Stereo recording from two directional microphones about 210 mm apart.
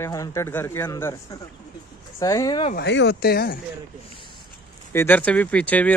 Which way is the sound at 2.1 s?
15° left (ahead or behind).